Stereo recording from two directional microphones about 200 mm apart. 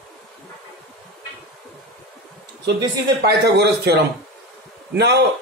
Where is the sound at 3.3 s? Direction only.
55° right (ahead or behind).